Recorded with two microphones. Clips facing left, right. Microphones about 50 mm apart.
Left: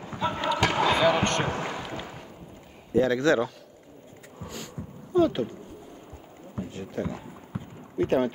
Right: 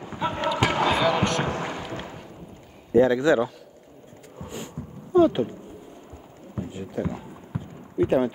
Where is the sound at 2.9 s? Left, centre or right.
Centre.